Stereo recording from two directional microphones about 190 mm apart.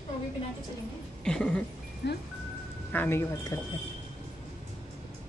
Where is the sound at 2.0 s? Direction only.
65° left (ahead or behind).